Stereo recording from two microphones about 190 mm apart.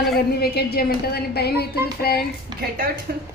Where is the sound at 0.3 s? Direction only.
55° left (ahead or behind).